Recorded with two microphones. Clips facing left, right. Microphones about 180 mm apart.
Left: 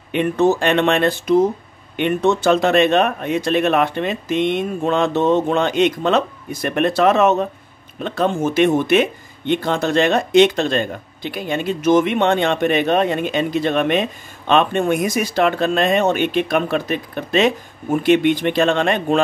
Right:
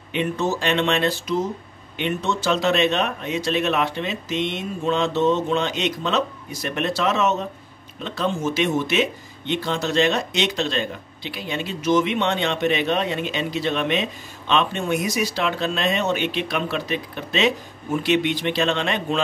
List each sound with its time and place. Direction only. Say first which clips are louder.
0.1 s speech: left 7 dB; 55° left (ahead or behind)